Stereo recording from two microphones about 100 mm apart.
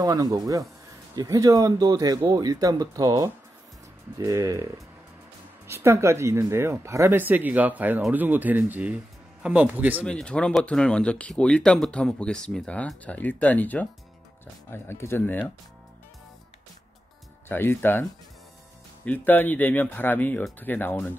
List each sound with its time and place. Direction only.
0.0 s speech: 40° right (ahead or behind)
7.2 s speech: 15° right (ahead or behind)
10.0 s speech: 10° left (ahead or behind)
17.5 s speech: 20° left (ahead or behind)
19.0 s speech: 15° left (ahead or behind)